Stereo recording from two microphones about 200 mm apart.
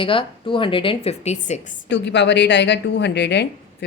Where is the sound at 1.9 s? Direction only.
60° left (ahead or behind).